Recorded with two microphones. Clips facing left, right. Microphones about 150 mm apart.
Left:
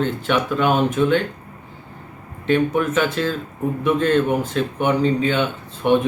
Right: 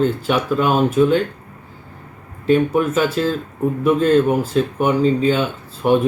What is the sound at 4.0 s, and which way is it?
Speech, 40° right (ahead or behind).